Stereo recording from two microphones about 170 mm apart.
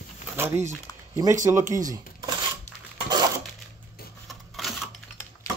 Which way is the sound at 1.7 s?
20° right (ahead or behind).